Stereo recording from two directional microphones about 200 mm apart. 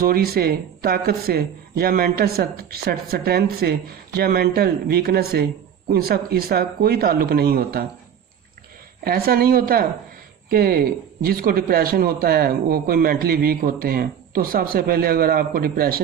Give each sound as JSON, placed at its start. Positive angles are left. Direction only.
{"t": 0.0, "sound": "speech", "side_deg": -50}
{"t": 9.0, "sound": "speech", "side_deg": -50}